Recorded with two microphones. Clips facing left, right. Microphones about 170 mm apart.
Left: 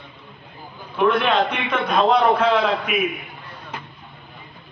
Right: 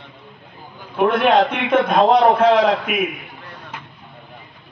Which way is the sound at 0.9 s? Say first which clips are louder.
Right 3 dB; 55° right (ahead or behind).